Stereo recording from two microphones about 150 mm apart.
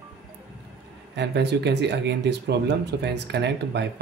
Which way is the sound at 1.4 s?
90° right.